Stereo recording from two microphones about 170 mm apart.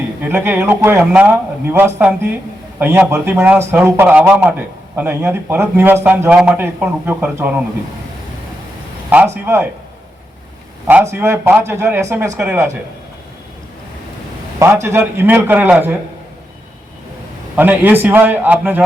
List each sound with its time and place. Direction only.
0.2 s a man's voice: 15° right (ahead or behind)
9.0 s a man's voice: 10° right (ahead or behind)
10.8 s a man's voice: 15° right (ahead or behind)
14.6 s a man's voice: 15° right (ahead or behind)
17.6 s a man's voice: 10° right (ahead or behind)